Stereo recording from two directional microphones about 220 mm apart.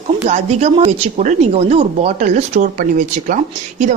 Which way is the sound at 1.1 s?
30° right (ahead or behind).